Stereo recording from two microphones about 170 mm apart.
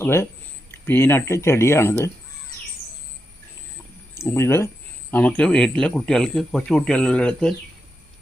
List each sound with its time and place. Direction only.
0.0 s speech: 15° left (ahead or behind)
4.1 s speech: 15° left (ahead or behind)